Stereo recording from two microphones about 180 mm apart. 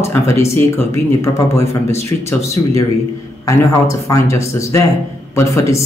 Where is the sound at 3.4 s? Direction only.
15° left (ahead or behind).